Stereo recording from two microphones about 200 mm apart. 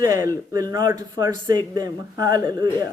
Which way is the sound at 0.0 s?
15° right (ahead or behind).